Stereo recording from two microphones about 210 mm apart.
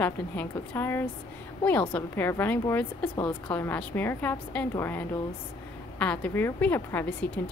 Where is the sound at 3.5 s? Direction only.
10° left (ahead or behind).